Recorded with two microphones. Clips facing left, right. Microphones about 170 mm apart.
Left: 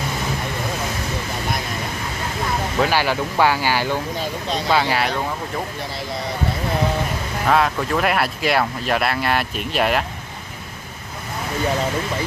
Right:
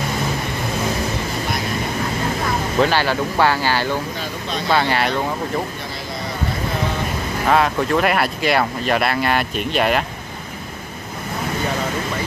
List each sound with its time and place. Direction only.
2.8 s speech: 10° left (ahead or behind)
7.4 s speech: centre (ahead or behind)